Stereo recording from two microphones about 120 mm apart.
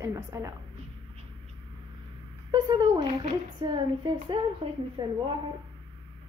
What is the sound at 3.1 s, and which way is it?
Speech, 65° right (ahead or behind).